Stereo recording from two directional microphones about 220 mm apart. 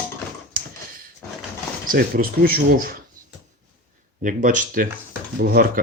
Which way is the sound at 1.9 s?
40° right (ahead or behind).